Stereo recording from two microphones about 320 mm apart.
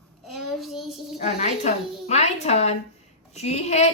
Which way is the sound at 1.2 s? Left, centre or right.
Left.